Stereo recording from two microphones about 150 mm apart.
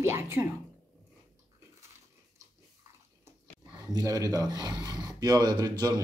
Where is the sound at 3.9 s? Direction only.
25° right (ahead or behind).